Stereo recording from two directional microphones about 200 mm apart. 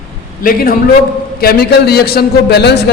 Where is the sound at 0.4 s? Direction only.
45° left (ahead or behind).